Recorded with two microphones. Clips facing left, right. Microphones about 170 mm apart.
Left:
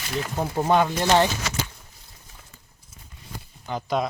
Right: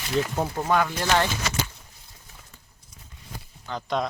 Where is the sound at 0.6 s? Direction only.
25° left (ahead or behind).